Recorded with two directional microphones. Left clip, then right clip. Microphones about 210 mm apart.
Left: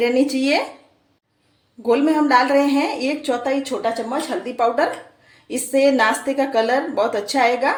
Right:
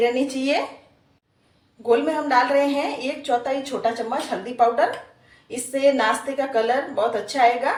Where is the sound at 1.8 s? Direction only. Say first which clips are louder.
Left 3 dB; 50° left (ahead or behind).